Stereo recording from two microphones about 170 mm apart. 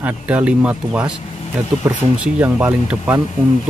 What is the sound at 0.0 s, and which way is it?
Speech, 10° right (ahead or behind).